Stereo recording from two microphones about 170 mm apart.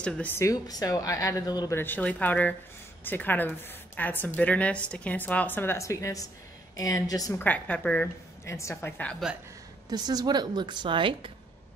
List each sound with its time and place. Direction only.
0.0 s speech: 10° left (ahead or behind)
1.8 s a woman's voice: 10° left (ahead or behind)
9.8 s a woman's voice: 25° right (ahead or behind)